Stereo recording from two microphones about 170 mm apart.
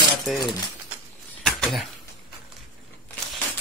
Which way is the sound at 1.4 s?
5° left (ahead or behind).